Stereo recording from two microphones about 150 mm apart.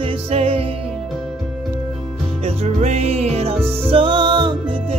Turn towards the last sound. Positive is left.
turn(degrees=-30)  # may be behind; listen again after turning